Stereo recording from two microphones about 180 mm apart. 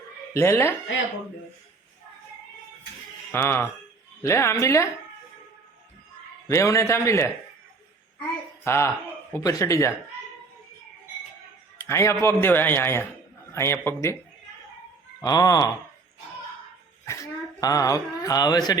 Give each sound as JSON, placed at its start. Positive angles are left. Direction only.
{"t": 0.3, "sound": "a man's voice", "side_deg": 15}
{"t": 3.3, "sound": "a man's voice", "side_deg": 15}
{"t": 6.5, "sound": "a man's voice", "side_deg": 15}
{"t": 8.6, "sound": "a man's voice", "side_deg": 15}
{"t": 11.9, "sound": "a man's voice", "side_deg": 15}
{"t": 15.2, "sound": "speech", "side_deg": 20}
{"t": 17.1, "sound": "speech", "side_deg": 20}